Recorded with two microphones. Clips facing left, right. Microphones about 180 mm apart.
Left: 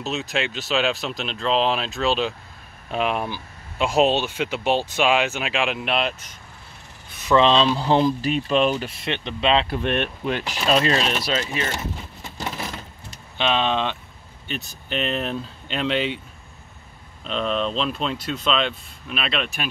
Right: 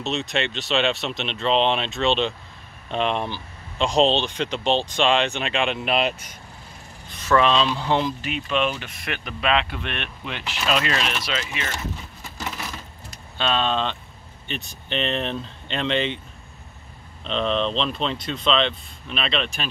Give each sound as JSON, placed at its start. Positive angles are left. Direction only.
{"t": 0.0, "sound": "speech", "side_deg": 0}
{"t": 7.3, "sound": "speech", "side_deg": 30}
{"t": 13.4, "sound": "speech", "side_deg": 15}
{"t": 17.2, "sound": "speech", "side_deg": 5}